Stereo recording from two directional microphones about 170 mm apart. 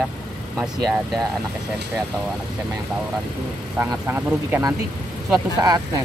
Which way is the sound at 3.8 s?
15° right (ahead or behind).